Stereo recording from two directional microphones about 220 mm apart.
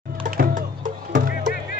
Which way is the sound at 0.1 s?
40° right (ahead or behind).